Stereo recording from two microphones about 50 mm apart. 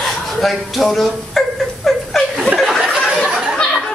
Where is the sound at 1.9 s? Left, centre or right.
Centre.